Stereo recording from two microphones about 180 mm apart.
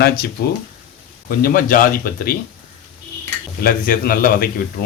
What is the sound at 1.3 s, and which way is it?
Speech, 55° left (ahead or behind).